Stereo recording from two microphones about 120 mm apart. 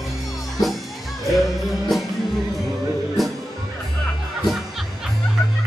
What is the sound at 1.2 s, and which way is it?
Music, centre (ahead or behind).